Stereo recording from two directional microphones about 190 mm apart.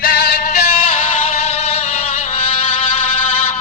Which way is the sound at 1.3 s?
35° left (ahead or behind).